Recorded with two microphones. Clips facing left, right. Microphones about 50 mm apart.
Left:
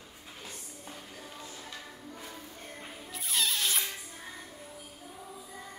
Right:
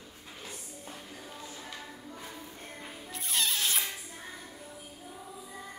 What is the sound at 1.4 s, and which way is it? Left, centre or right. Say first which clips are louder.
Music: right 1 dB; right.